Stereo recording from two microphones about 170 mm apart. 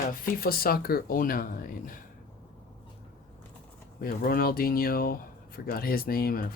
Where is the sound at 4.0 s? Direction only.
60° left (ahead or behind).